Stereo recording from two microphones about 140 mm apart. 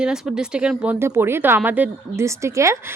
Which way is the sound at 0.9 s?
20° right (ahead or behind).